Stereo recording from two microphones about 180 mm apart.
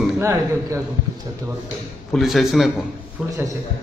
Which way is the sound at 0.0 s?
15° right (ahead or behind).